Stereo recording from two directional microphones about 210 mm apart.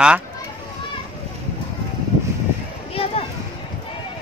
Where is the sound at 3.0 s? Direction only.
30° left (ahead or behind).